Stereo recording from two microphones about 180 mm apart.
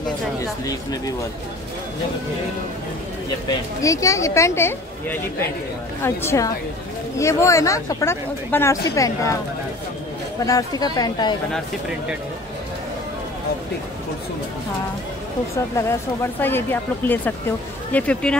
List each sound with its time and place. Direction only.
3.8 s speech: 15° left (ahead or behind)
10.4 s a woman's voice: 20° left (ahead or behind)
16.3 s speech: 10° left (ahead or behind)